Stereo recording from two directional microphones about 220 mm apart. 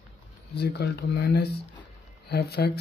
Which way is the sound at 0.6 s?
50° left (ahead or behind).